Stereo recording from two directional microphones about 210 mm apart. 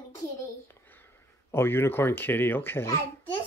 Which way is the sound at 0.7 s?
10° left (ahead or behind).